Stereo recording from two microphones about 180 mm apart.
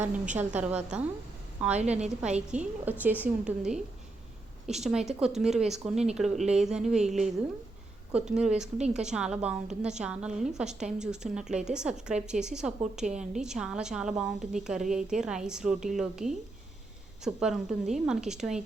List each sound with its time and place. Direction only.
0.3 s a woman's voice: 10° right (ahead or behind)
1.7 s a woman's voice: 40° right (ahead or behind)
2.5 s a woman's voice: 5° right (ahead or behind)